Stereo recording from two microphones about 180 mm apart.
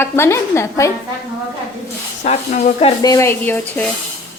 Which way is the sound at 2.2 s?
35° left (ahead or behind).